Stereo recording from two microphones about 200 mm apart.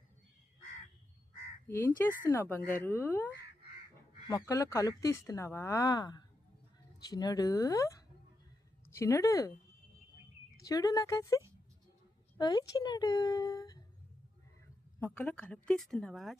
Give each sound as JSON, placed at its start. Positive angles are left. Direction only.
{"t": 1.6, "sound": "speech", "side_deg": 10}
{"t": 4.3, "sound": "speech", "side_deg": 15}
{"t": 10.7, "sound": "speech", "side_deg": 20}
{"t": 14.9, "sound": "speech", "side_deg": 10}